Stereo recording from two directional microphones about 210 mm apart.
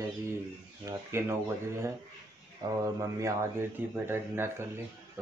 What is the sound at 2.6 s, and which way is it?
Speech, 20° right (ahead or behind).